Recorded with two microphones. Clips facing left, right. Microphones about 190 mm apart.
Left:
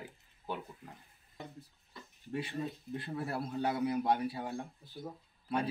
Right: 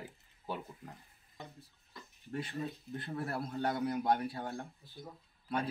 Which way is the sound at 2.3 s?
10° left (ahead or behind).